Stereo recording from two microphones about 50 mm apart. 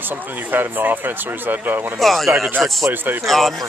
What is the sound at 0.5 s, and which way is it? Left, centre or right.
Speech, right.